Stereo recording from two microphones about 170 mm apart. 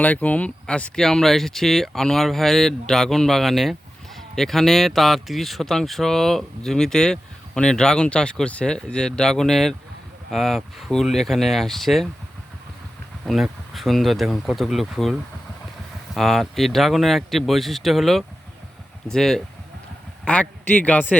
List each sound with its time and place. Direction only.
0.0 s speech: 10° left (ahead or behind)
13.2 s speech: centre (ahead or behind)
16.1 s a man's voice: centre (ahead or behind)